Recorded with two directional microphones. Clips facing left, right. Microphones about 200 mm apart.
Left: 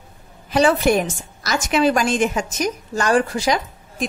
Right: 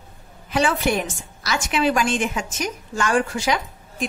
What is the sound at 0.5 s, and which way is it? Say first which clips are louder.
A woman's voice: left 5 dB; 35° left (ahead or behind).